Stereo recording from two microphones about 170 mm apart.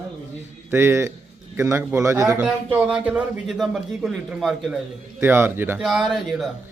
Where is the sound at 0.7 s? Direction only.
15° right (ahead or behind).